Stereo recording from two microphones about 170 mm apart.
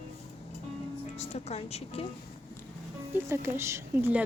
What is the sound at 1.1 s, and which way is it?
Speech, 40° left (ahead or behind).